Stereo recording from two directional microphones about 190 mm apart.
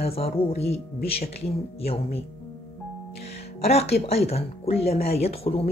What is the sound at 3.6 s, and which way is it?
Speech, 35° left (ahead or behind).